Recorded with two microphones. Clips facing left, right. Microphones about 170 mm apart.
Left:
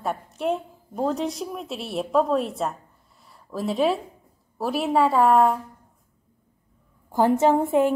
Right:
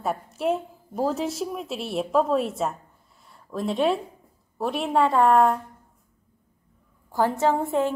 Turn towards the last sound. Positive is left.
turn(degrees=15)  # may be behind; listen again after turning